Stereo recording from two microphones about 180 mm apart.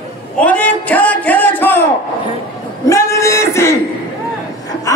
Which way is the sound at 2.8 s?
15° left (ahead or behind).